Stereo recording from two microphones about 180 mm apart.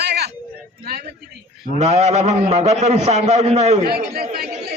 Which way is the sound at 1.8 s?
35° right (ahead or behind).